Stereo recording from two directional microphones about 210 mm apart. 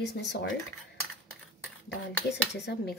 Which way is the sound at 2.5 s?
50° left (ahead or behind).